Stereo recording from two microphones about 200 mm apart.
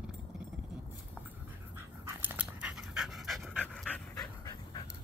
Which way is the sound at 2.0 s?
10° right (ahead or behind).